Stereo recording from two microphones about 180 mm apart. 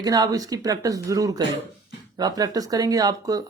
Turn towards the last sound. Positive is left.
turn(degrees=-20)  # may be behind; listen again after turning